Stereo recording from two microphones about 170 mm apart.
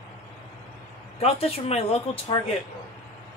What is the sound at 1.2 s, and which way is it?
Speech, 35° left (ahead or behind).